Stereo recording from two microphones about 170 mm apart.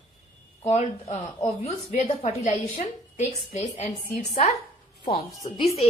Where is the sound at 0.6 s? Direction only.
35° left (ahead or behind).